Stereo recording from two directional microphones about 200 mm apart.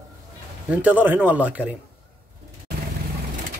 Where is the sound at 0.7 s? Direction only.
10° right (ahead or behind).